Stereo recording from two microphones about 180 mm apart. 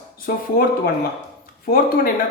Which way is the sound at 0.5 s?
55° left (ahead or behind).